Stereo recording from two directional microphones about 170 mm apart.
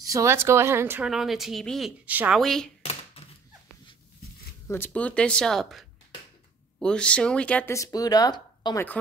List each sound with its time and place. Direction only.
0.0 s speech: 20° right (ahead or behind); by 2.7 s 5° left (ahead or behind)
2.8 s a sound: 35° left (ahead or behind)
4.6 s speech: 15° left (ahead or behind)